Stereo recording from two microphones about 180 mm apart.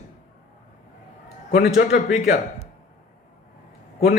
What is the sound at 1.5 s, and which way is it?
Speech, 60° left (ahead or behind).